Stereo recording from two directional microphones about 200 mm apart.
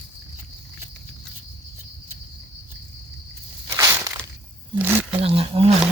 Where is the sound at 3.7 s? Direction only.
15° right (ahead or behind).